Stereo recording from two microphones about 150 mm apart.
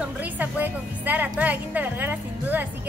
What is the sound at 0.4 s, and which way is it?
A woman's voice, 10° right (ahead or behind).